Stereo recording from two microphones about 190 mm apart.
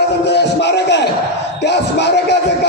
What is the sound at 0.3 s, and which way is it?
Music, 65° left (ahead or behind).